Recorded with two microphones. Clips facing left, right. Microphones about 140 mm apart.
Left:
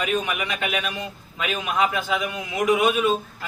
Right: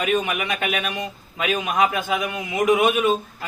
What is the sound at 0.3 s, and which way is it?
A man's voice, 20° right (ahead or behind).